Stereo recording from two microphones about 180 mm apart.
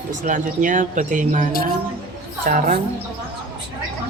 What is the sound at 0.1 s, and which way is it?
Speech, 45° right (ahead or behind).